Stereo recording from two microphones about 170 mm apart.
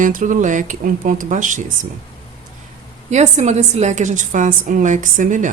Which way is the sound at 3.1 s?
45° right (ahead or behind).